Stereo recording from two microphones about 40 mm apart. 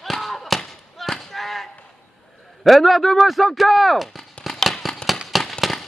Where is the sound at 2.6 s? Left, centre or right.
Centre.